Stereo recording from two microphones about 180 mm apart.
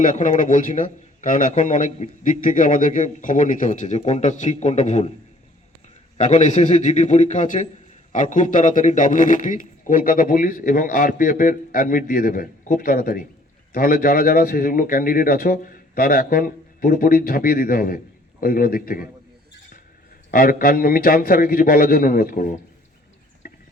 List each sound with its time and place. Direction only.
0.0 s a man's voice: 45° left (ahead or behind)
6.1 s a man's voice: 40° left (ahead or behind)
20.3 s a man's voice: 55° left (ahead or behind)
23.4 s a sound: 55° left (ahead or behind)